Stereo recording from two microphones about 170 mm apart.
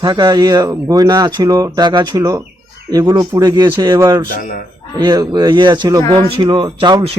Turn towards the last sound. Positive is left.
turn(degrees=-25)  # may be behind; listen again after turning